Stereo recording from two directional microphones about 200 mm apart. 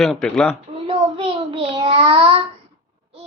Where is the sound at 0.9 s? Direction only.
30° right (ahead or behind).